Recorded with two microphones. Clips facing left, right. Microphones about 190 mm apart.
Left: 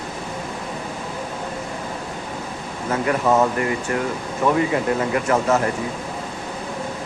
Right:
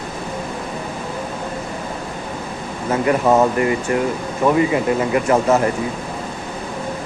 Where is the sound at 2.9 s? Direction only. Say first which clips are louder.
Right 3 dB; 20° right (ahead or behind).